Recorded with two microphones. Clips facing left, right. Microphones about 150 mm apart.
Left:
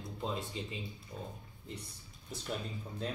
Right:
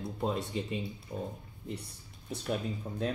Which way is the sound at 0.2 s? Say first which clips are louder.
Right 5 dB; 60° right (ahead or behind).